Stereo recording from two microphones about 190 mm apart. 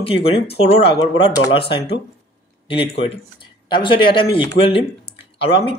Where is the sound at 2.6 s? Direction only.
30° left (ahead or behind).